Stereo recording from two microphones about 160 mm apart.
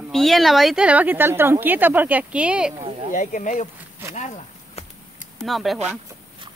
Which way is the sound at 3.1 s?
50° left (ahead or behind).